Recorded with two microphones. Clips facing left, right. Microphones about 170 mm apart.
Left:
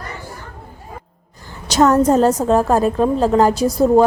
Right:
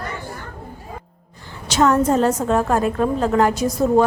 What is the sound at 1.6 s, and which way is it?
A woman's voice, 40° left (ahead or behind).